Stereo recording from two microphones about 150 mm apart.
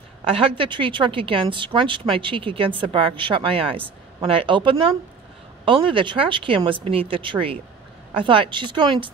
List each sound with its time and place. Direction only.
0.2 s a woman's voice: 40° right (ahead or behind)